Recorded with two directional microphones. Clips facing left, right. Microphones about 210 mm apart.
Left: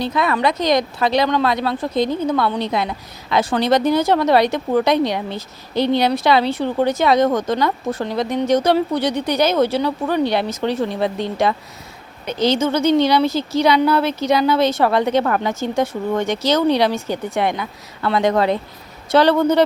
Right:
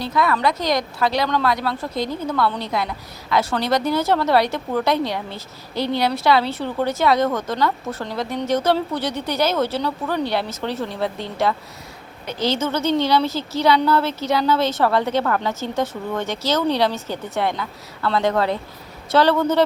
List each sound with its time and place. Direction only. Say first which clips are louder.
0.0 s a woman's voice: left 2 dB; 20° left (ahead or behind)